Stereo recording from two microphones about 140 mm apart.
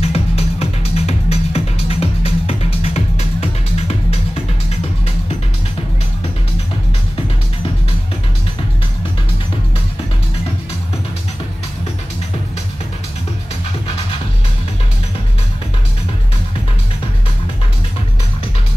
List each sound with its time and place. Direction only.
0.0 s music: 45° left (ahead or behind)